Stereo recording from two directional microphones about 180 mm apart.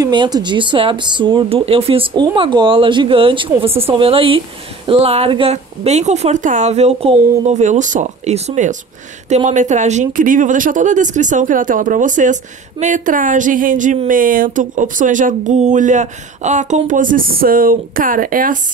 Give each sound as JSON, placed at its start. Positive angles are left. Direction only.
{"t": 0.0, "sound": "speech", "side_deg": -25}